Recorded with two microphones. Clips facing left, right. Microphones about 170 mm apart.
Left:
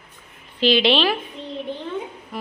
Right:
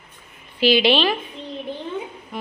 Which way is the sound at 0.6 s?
5° right (ahead or behind).